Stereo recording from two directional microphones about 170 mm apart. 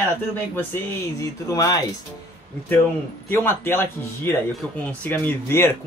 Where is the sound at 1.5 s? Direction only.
20° left (ahead or behind).